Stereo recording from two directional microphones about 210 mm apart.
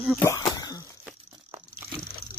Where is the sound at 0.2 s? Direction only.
15° left (ahead or behind).